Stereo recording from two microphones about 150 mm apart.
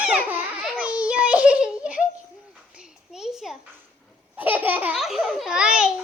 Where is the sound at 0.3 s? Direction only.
10° right (ahead or behind).